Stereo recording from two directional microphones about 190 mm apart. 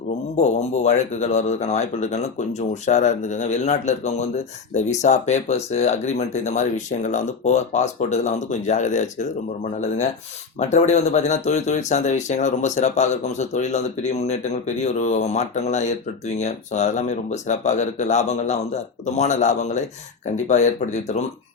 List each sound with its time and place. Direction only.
0.3 s speech: 35° left (ahead or behind)
10.6 s speech: 35° left (ahead or behind)